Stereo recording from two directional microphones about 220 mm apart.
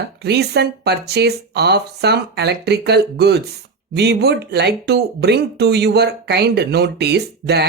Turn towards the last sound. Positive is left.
turn(degrees=-50)  # may be behind; listen again after turning